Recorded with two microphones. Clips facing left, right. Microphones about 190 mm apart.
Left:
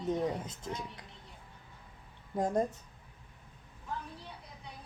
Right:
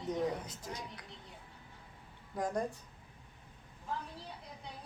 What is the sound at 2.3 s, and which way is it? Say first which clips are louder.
Speech: left 5 dB; 25° left (ahead or behind).